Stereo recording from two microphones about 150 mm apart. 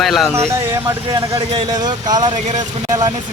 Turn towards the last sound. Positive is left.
turn(degrees=-25)  # may be behind; listen again after turning